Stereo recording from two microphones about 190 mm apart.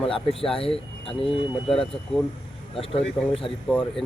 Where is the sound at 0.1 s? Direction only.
30° left (ahead or behind).